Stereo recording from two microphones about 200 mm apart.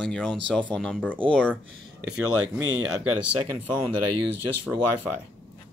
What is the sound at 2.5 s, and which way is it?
Speech, 90° right.